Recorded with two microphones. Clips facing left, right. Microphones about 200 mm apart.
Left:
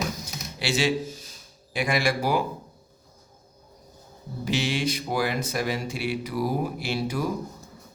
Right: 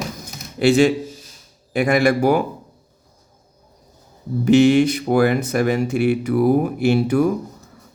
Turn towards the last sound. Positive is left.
turn(degrees=-55)  # may be behind; listen again after turning